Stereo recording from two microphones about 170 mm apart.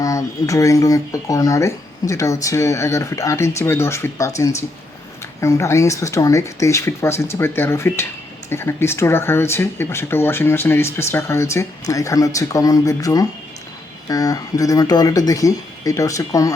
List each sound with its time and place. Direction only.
0.0 s speech: 20° left (ahead or behind)
5.4 s speech: 15° left (ahead or behind)